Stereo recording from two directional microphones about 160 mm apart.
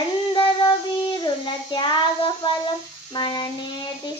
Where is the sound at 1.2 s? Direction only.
25° left (ahead or behind).